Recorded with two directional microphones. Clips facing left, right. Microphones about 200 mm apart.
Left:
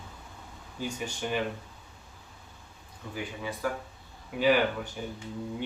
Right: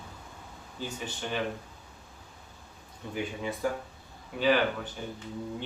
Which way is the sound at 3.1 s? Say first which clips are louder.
Right 3 dB; 25° right (ahead or behind).